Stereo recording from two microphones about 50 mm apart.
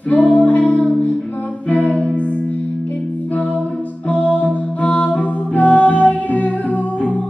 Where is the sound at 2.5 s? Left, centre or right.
Left.